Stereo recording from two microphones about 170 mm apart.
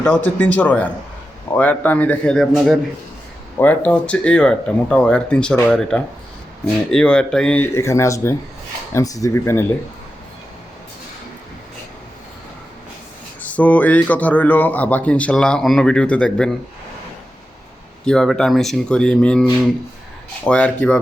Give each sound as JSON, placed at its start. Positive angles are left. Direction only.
{"t": 0.0, "sound": "speech", "side_deg": 5}
{"t": 3.6, "sound": "speech", "side_deg": 10}
{"t": 13.4, "sound": "speech", "side_deg": 10}
{"t": 18.0, "sound": "speech", "side_deg": 5}